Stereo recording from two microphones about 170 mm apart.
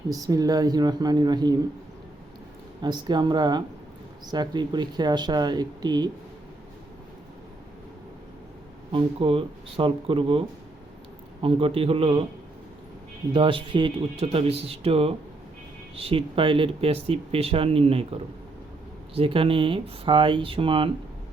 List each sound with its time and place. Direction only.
0.1 s speech: 20° right (ahead or behind)
2.8 s speech: 25° right (ahead or behind)
8.9 s speech: 30° right (ahead or behind)
11.4 s speech: 35° right (ahead or behind)
13.3 s speech: 30° right (ahead or behind)
19.1 s speech: 30° right (ahead or behind)